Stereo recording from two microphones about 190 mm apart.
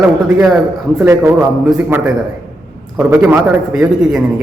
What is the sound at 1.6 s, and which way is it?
Speech, 5° right (ahead or behind).